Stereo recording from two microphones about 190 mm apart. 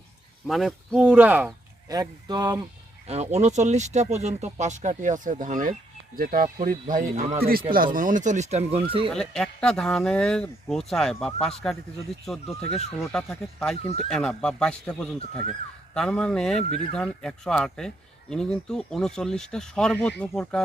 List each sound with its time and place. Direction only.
0.4 s speech: centre (ahead or behind); by 2.6 s 20° right (ahead or behind)
3.1 s speech: 35° right (ahead or behind)
9.1 s speech: 5° left (ahead or behind)